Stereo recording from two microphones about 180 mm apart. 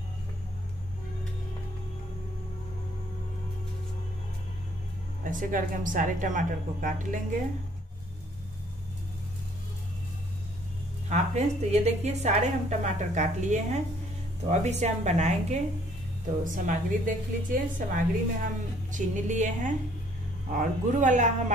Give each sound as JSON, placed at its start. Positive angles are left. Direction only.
{"t": 5.2, "sound": "a woman's voice", "side_deg": -50}
{"t": 11.1, "sound": "a woman's voice", "side_deg": -40}